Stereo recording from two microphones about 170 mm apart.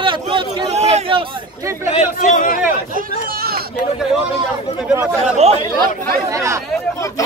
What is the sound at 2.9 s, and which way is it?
Speech, 55° right (ahead or behind).